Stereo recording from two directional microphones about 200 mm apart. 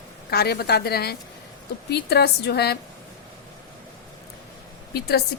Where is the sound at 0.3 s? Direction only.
55° left (ahead or behind).